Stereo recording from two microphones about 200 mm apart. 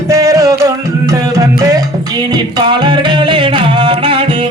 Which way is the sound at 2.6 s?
20° right (ahead or behind).